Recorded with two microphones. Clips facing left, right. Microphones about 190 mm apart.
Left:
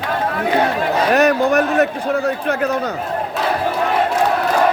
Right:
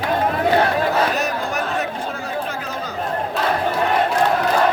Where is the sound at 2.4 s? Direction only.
65° left (ahead or behind).